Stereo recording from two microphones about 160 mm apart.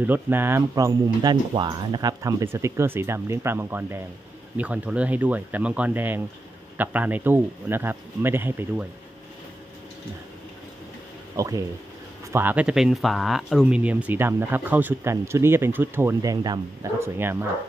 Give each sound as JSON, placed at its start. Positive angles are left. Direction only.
{"t": 0.0, "sound": "speech", "side_deg": -10}
{"t": 11.3, "sound": "speech", "side_deg": -20}
{"t": 17.0, "sound": "speech", "side_deg": -15}